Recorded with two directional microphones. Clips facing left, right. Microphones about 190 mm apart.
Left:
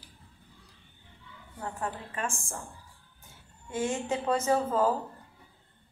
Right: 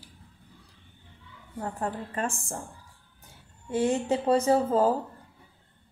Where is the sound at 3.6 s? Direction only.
35° right (ahead or behind).